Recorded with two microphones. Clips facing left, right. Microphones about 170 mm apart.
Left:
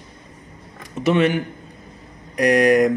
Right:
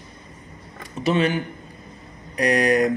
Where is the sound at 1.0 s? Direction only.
70° left (ahead or behind).